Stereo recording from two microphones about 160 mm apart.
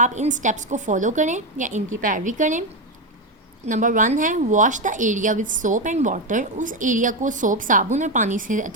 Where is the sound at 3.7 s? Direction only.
55° right (ahead or behind).